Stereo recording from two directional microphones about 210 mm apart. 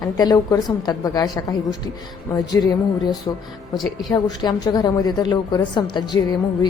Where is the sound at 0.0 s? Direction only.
20° left (ahead or behind).